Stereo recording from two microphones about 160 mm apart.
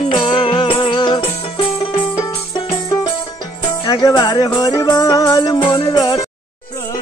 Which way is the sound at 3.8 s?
25° left (ahead or behind).